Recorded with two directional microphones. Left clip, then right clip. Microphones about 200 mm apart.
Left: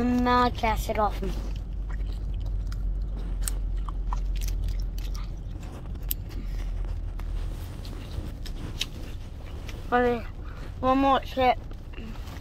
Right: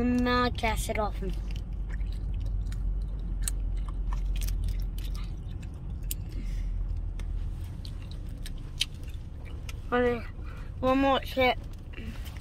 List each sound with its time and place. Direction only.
0.0 s speech: 10° right (ahead or behind)
8.8 s a sound: 15° right (ahead or behind)
9.8 s speech: 5° right (ahead or behind)